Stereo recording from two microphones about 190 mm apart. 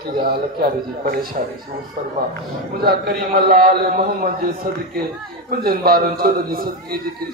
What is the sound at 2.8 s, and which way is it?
A man's voice, 50° right (ahead or behind).